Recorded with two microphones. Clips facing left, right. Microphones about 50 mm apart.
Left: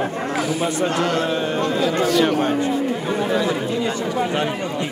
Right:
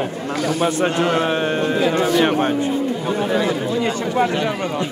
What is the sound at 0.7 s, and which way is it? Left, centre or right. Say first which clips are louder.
Speech: right 2 dB; right.